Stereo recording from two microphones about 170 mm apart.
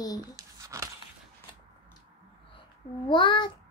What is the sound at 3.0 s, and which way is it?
Speech, 30° left (ahead or behind).